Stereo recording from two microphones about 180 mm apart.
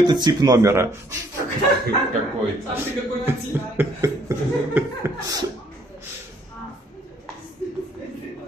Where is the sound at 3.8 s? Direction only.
15° right (ahead or behind).